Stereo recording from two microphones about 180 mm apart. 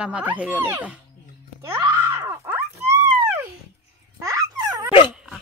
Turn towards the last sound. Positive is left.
turn(degrees=-20)  # may be behind; listen again after turning